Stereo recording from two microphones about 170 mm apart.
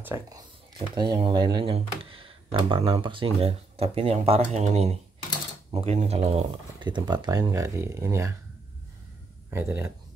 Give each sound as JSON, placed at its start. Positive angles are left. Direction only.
{"t": 0.0, "sound": "speech", "side_deg": -15}
{"t": 9.5, "sound": "speech", "side_deg": -15}